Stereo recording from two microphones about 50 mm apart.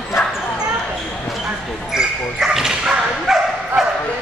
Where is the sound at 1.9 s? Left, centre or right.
Centre.